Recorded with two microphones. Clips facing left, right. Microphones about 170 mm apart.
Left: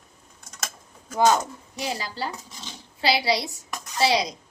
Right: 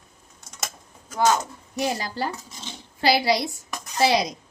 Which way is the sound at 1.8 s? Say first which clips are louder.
Right 4 dB; 50° right (ahead or behind).